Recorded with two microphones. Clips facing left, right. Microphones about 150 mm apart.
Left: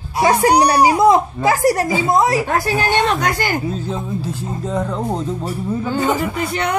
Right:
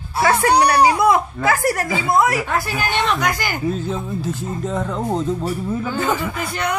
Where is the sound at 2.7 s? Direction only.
30° left (ahead or behind).